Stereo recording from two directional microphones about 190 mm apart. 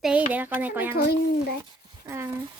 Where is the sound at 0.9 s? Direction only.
55° left (ahead or behind).